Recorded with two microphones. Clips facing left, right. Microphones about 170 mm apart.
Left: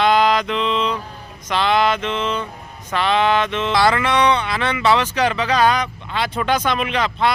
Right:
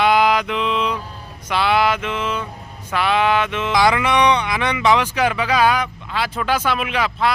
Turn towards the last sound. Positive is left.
turn(degrees=-5)  # may be behind; listen again after turning